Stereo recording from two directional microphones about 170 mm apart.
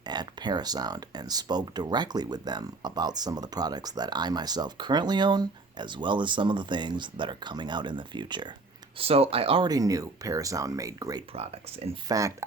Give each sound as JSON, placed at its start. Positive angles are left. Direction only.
{"t": 0.0, "sound": "speech", "side_deg": -25}
{"t": 11.3, "sound": "speech", "side_deg": -35}
{"t": 12.0, "sound": "speech", "side_deg": -20}